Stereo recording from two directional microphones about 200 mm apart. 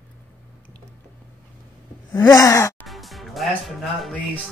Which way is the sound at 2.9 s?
Centre (ahead or behind).